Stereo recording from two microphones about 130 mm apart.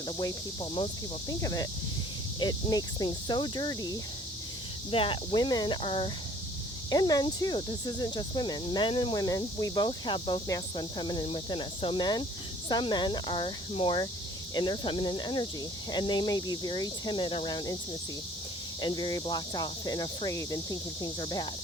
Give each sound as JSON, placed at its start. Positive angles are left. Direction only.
{"t": 1.3, "sound": "speech", "side_deg": 30}
{"t": 4.9, "sound": "speech", "side_deg": 45}
{"t": 6.9, "sound": "speech", "side_deg": 30}
{"t": 9.1, "sound": "speech", "side_deg": 30}
{"t": 18.8, "sound": "speech", "side_deg": 35}